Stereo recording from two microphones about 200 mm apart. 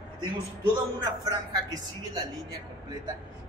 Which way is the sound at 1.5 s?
20° right (ahead or behind).